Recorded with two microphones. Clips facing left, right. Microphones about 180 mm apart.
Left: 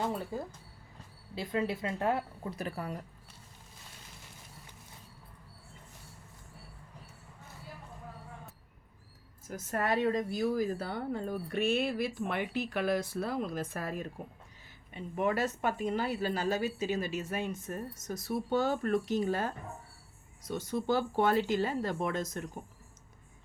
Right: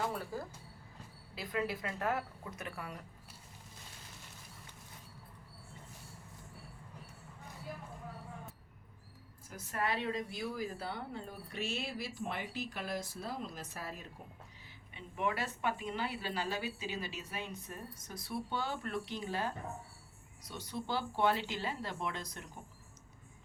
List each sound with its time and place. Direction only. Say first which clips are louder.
0.0 s speech: left 4 dB; 20° left (ahead or behind)
9.5 s a woman's voice: left 5 dB; 45° left (ahead or behind)